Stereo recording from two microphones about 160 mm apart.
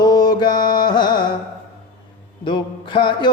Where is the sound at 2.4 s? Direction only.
30° left (ahead or behind).